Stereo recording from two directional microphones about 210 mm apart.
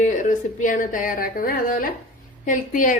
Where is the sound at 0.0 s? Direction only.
40° left (ahead or behind).